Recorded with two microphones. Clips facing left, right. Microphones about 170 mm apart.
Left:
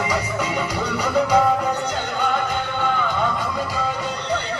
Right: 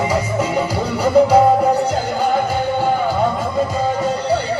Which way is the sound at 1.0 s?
30° right (ahead or behind).